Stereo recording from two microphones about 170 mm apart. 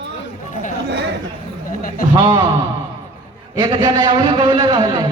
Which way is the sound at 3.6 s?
25° right (ahead or behind).